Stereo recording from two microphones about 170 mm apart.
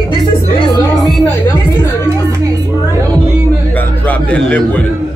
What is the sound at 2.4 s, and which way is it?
Music, 20° right (ahead or behind).